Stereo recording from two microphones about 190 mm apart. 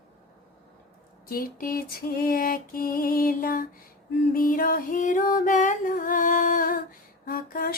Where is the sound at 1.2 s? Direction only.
50° left (ahead or behind).